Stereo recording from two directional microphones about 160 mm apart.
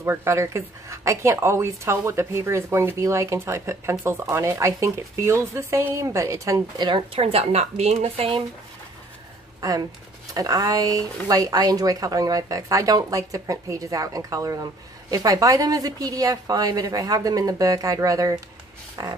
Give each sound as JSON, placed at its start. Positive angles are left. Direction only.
{"t": 0.0, "sound": "a woman's voice", "side_deg": -15}
{"t": 9.6, "sound": "speech", "side_deg": -25}